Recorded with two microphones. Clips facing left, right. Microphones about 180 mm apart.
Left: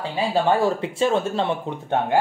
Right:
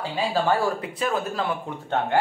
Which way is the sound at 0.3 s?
20° left (ahead or behind).